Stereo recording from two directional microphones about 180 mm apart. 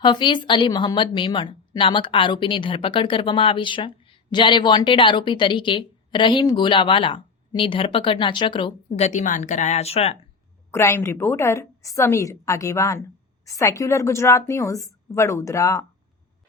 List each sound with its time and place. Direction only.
0.0 s a woman's voice: 25° left (ahead or behind)
9.0 s speech: 45° left (ahead or behind)
10.7 s a woman's voice: 15° left (ahead or behind)